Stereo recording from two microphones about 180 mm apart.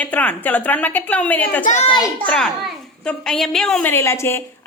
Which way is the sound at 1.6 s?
45° left (ahead or behind).